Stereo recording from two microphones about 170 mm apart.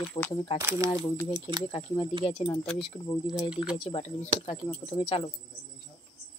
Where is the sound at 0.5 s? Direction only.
15° right (ahead or behind).